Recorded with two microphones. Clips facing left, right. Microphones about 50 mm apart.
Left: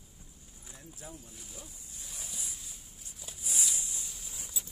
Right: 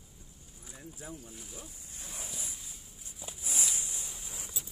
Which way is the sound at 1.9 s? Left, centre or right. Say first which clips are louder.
Right 4 dB; right.